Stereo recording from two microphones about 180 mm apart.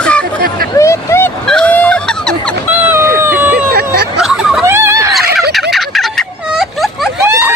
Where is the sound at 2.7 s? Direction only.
10° right (ahead or behind).